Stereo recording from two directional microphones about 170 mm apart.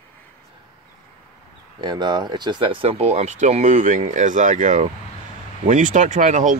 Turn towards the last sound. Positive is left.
turn(degrees=-45)  # may be behind; listen again after turning